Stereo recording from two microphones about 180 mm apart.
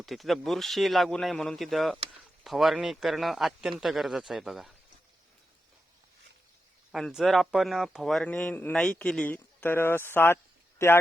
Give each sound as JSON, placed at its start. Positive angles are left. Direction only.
{"t": 0.0, "sound": "speech", "side_deg": 0}
{"t": 6.9, "sound": "speech", "side_deg": 0}